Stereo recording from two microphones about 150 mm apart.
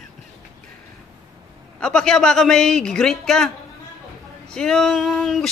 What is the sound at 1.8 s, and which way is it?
Speech, 5° left (ahead or behind).